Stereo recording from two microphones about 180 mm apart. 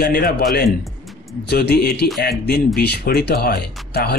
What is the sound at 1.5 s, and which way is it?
Speech, 60° left (ahead or behind).